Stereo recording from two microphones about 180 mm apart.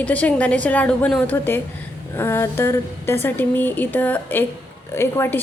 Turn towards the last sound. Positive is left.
turn(degrees=15)  # may be behind; listen again after turning